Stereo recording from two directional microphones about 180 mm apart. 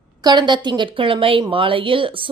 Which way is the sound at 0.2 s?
25° right (ahead or behind).